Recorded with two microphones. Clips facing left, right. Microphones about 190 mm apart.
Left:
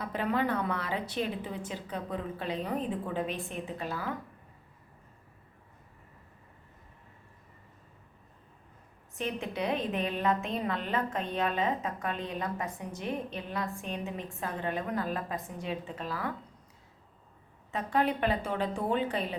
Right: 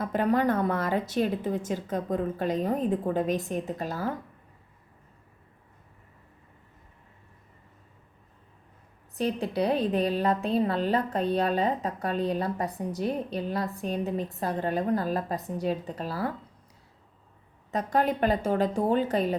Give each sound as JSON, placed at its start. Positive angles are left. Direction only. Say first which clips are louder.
{"t": 0.0, "sound": "a woman's voice", "louder": "right 6 dB", "side_deg": -45}
{"t": 9.1, "sound": "a woman's voice", "louder": "right 7 dB", "side_deg": -35}
{"t": 17.7, "sound": "a woman's voice", "louder": "right 3 dB", "side_deg": -40}